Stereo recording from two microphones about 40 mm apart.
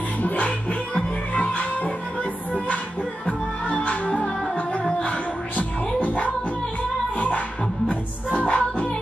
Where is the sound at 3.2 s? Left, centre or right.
Left.